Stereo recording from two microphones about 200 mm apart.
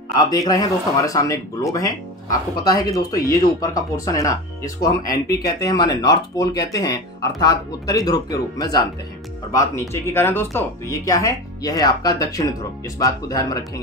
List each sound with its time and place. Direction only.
0.2 s speech: 20° left (ahead or behind)